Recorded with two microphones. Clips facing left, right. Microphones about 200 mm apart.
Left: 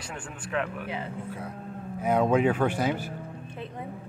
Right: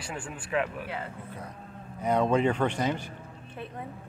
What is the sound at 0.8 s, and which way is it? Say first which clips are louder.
Speech: left 3 dB; 15° left (ahead or behind).